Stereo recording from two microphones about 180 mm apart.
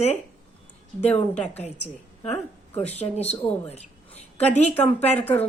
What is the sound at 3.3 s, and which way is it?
Speech, 5° left (ahead or behind).